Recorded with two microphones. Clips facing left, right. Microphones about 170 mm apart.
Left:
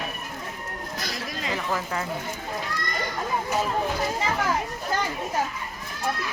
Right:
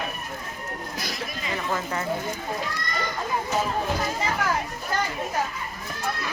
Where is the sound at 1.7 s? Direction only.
5° left (ahead or behind).